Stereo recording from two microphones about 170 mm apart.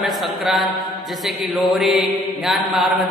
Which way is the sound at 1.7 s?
Centre (ahead or behind).